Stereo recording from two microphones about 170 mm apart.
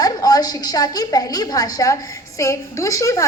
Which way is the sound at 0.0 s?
20° left (ahead or behind).